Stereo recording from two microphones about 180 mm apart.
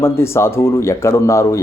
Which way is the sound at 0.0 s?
15° left (ahead or behind).